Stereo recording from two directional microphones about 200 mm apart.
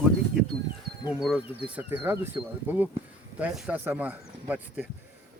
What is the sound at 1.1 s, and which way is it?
Speech, 5° right (ahead or behind).